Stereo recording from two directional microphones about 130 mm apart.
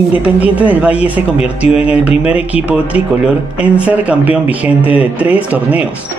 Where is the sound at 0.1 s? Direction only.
10° right (ahead or behind).